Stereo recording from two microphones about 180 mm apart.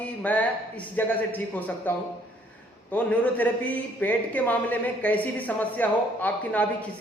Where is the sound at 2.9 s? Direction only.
10° left (ahead or behind).